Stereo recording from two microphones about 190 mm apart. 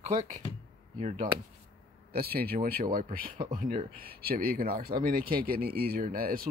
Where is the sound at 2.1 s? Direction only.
55° right (ahead or behind).